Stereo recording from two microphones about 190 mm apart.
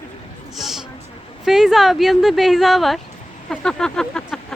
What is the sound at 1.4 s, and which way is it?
Speech, centre (ahead or behind).